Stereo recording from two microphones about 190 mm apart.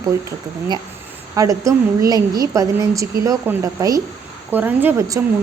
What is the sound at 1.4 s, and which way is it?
A woman's voice, 15° right (ahead or behind).